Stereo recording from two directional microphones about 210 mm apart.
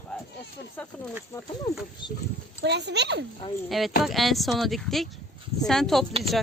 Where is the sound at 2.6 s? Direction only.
55° right (ahead or behind).